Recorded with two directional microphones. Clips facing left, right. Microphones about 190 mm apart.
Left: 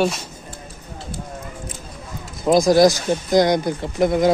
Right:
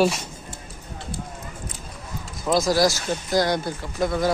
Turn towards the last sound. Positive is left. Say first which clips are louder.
# left 6 dB
turn(degrees=20)  # may be behind; listen again after turning